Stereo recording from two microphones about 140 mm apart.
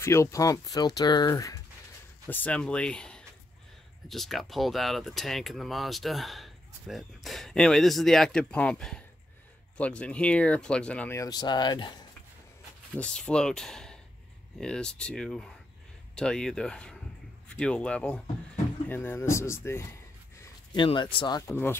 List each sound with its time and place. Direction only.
0.0 s speech: 20° left (ahead or behind)
2.2 s speech: 10° left (ahead or behind)
11.1 s speech: 30° left (ahead or behind)
12.9 s speech: 5° left (ahead or behind)
20.7 s speech: 35° left (ahead or behind)
21.5 s speech: 15° left (ahead or behind)